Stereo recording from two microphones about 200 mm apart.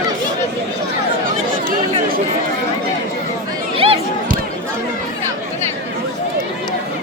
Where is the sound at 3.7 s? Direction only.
30° right (ahead or behind).